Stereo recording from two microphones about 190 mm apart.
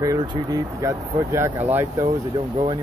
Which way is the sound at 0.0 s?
20° right (ahead or behind).